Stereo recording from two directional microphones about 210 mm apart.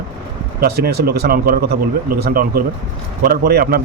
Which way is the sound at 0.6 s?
50° right (ahead or behind).